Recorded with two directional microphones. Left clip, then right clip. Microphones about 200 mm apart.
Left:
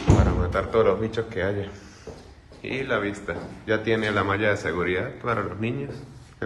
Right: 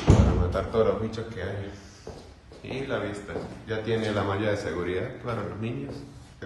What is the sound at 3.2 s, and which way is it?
A man's voice, centre (ahead or behind).